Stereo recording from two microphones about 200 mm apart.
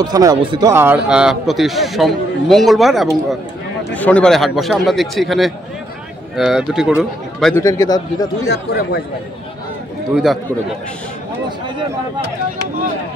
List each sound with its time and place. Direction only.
0.0 s a man's voice: 20° right (ahead or behind); by 7.5 s centre (ahead or behind)
7.5 s a man's voice: 15° left (ahead or behind)
8.5 s speech: 50° left (ahead or behind)
10.1 s a man's voice: centre (ahead or behind)